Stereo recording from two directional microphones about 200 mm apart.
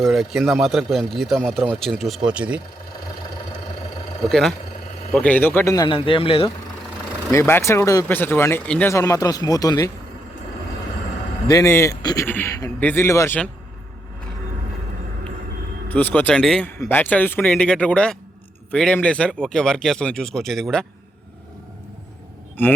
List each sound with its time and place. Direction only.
0.0 s speech: centre (ahead or behind)
4.3 s speech: centre (ahead or behind); by 6.5 s 25° left (ahead or behind)
7.3 s speech: 10° left (ahead or behind)
11.4 s speech: 15° left (ahead or behind)
15.9 s speech: 10° left (ahead or behind)